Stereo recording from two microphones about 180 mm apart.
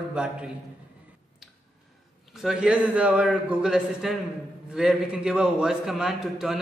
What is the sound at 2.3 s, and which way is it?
Speech, 5° right (ahead or behind).